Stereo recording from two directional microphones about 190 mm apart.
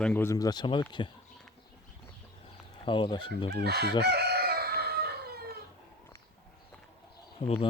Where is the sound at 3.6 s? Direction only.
60° right (ahead or behind).